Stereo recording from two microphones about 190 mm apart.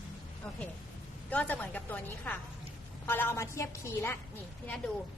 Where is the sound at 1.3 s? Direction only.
10° left (ahead or behind).